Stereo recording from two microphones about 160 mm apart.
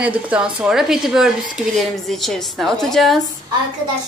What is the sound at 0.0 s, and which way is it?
A woman's voice, 10° right (ahead or behind).